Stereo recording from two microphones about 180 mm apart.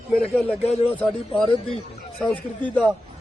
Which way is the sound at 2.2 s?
5° left (ahead or behind).